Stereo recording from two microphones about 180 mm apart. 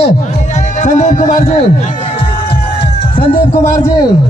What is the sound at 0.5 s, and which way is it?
Speech, 40° left (ahead or behind).